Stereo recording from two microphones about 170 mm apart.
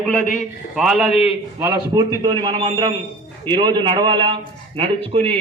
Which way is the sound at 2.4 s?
30° right (ahead or behind).